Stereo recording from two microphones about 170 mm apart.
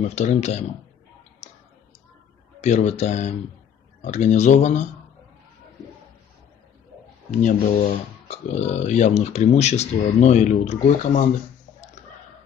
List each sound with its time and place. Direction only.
0.1 s speech: 40° left (ahead or behind)
2.6 s speech: 40° left (ahead or behind)
7.2 s speech: 45° left (ahead or behind)